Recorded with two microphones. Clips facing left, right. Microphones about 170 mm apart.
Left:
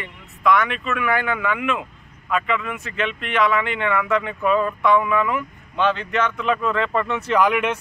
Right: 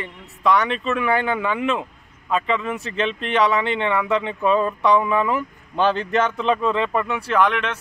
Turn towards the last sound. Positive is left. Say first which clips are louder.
# left 1 dB
turn(degrees=10)  # may be behind; listen again after turning